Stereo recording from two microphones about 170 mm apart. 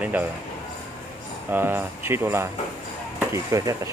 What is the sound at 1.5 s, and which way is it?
Speech, 10° right (ahead or behind).